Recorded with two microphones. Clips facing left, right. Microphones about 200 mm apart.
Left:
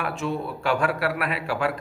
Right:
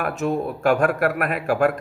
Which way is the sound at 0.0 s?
45° right (ahead or behind).